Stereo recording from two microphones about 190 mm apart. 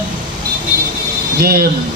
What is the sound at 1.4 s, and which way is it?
Speech, 50° right (ahead or behind).